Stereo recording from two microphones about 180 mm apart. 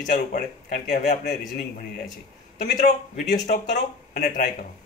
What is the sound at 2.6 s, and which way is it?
Speech, 40° left (ahead or behind).